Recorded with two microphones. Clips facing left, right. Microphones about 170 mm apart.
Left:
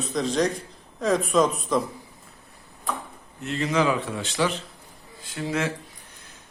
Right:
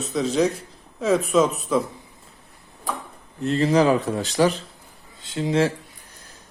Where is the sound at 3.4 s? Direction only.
35° right (ahead or behind).